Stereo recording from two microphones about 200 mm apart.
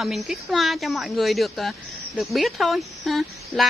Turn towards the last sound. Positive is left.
turn(degrees=0)  # may be behind; listen again after turning